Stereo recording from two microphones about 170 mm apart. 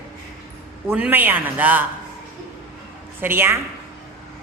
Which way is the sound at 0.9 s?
10° right (ahead or behind).